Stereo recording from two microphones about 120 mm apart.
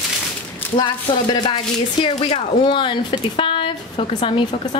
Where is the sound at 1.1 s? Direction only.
45° left (ahead or behind).